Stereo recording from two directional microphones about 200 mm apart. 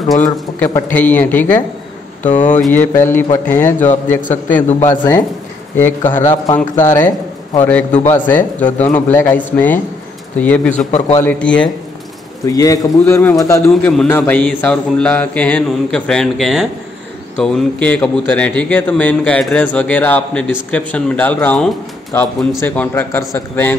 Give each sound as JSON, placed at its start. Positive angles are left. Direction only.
{"t": 0.6, "sound": "speech", "side_deg": 10}
{"t": 2.2, "sound": "speech", "side_deg": 35}
{"t": 2.5, "sound": "speech", "side_deg": 10}
{"t": 6.5, "sound": "speech", "side_deg": 35}
{"t": 8.0, "sound": "speech", "side_deg": 10}
{"t": 12.4, "sound": "speech", "side_deg": 15}